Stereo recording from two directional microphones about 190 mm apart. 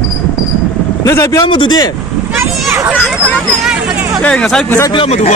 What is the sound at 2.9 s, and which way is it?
Speech, 5° right (ahead or behind).